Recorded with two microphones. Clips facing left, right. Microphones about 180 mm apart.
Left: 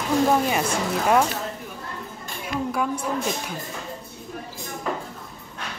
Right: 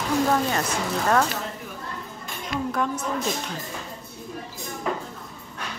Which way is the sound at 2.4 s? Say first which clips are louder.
Left 1 dB; 10° left (ahead or behind).